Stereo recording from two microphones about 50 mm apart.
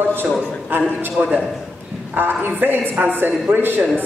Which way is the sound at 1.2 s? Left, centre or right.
Right.